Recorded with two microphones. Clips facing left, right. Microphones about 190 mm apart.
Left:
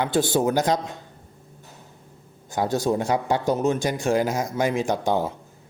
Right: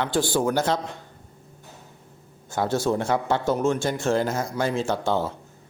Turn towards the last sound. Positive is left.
turn(degrees=15)  # may be behind; listen again after turning